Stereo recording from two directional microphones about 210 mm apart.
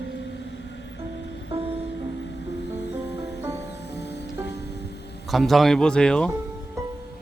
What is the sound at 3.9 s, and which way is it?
Music, 55° left (ahead or behind).